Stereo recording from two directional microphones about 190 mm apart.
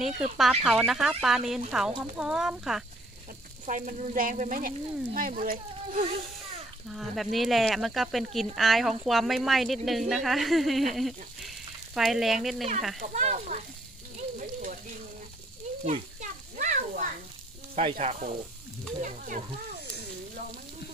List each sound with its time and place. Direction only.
0.0 s speech: 5° right (ahead or behind)
3.6 s speech: 40° right (ahead or behind)
6.9 s speech: centre (ahead or behind)
13.0 s speech: 40° right (ahead or behind)
14.4 s a sound: 40° right (ahead or behind)
15.8 s children playing: 40° right (ahead or behind)
17.7 s speech: 35° right (ahead or behind)